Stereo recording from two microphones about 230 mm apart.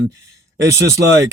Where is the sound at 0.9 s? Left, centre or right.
Right.